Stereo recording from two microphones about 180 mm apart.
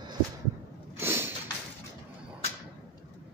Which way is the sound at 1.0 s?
15° right (ahead or behind).